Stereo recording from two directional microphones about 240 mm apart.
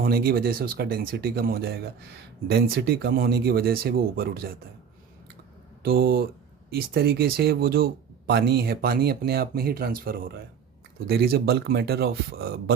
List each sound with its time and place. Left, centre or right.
0.0 s speech: right
5.8 s speech: right